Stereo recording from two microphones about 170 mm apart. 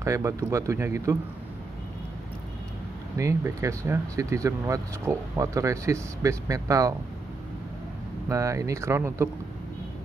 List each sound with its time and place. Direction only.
0.0 s speech: 15° right (ahead or behind)
3.2 s speech: 20° right (ahead or behind)
8.3 s speech: 20° right (ahead or behind)